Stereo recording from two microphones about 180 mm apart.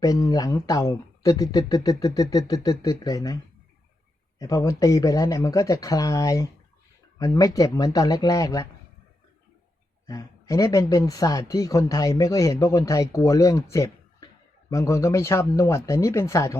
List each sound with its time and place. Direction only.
0.0 s speech: 20° left (ahead or behind)
4.4 s speech: 20° left (ahead or behind)
10.1 s speech: 20° left (ahead or behind)